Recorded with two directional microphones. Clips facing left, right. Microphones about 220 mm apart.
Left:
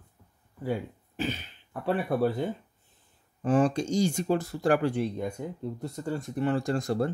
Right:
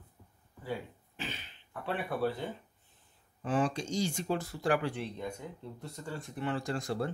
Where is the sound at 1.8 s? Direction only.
45° left (ahead or behind).